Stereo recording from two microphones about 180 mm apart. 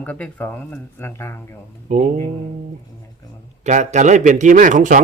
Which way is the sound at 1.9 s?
40° right (ahead or behind).